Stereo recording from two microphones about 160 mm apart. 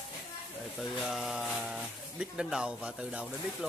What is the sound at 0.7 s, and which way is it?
Speech, centre (ahead or behind).